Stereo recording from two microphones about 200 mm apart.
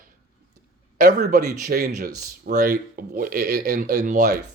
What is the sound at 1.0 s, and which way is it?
A man's voice, 50° right (ahead or behind).